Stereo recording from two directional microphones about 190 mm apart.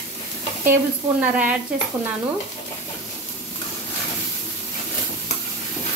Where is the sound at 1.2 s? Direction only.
5° right (ahead or behind).